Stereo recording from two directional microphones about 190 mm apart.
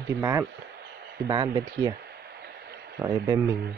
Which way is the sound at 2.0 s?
60° right (ahead or behind).